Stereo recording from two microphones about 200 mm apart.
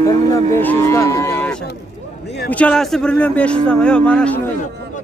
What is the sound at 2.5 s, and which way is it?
Speech, 5° left (ahead or behind).